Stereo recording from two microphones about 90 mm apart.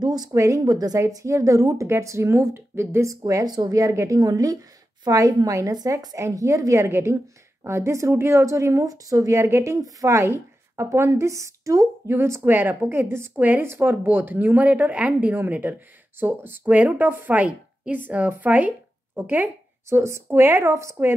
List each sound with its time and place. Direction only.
0.0 s speech: 50° right (ahead or behind)
0.3 s a woman's voice: 35° right (ahead or behind); by 20.0 s 20° right (ahead or behind)
20.0 s a woman's voice: 30° right (ahead or behind)